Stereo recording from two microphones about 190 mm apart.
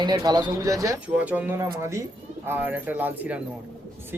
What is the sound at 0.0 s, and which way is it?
Speech, 20° right (ahead or behind).